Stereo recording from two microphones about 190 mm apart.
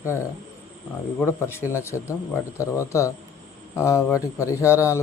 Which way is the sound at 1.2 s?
15° left (ahead or behind).